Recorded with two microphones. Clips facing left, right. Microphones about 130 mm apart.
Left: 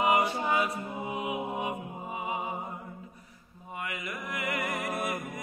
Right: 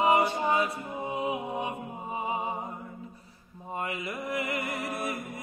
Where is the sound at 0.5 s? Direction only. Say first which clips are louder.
Right 1 dB; 30° right (ahead or behind).